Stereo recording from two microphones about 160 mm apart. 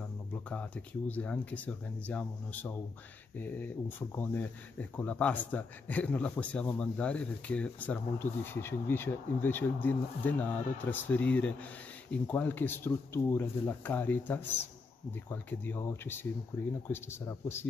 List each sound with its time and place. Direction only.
0.3 s speech: 10° left (ahead or behind)